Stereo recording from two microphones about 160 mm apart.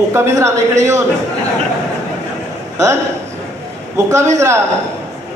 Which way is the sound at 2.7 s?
20° right (ahead or behind).